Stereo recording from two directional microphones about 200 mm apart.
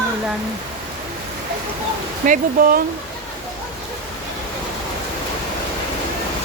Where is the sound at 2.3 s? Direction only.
45° right (ahead or behind).